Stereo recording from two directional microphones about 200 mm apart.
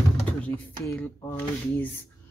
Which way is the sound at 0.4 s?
5° left (ahead or behind).